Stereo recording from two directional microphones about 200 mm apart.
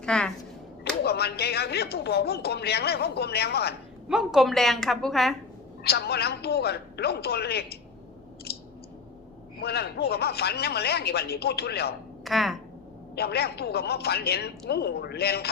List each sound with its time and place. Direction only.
0.0 s speech: 5° left (ahead or behind)
1.0 s speech: 55° left (ahead or behind)
4.1 s a woman's voice: 5° right (ahead or behind)
5.8 s speech: 50° left (ahead or behind)
8.5 s a sound: 50° left (ahead or behind)
9.6 s speech: 55° left (ahead or behind)
12.2 s speech: centre (ahead or behind)
13.1 s speech: 55° left (ahead or behind)